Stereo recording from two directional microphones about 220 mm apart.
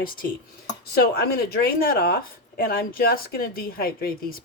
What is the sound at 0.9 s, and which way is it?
Speech, 45° left (ahead or behind).